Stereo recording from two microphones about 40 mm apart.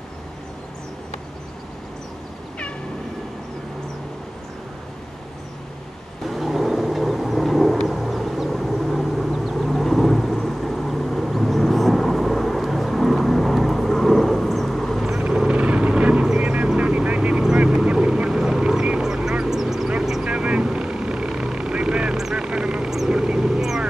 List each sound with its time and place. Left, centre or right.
6.2 s vehicle: centre
15.1 s vehicle: right
17.9 s duck: right
19.6 s vehicle: centre
20.2 s vehicle: right
22.8 s vehicle: centre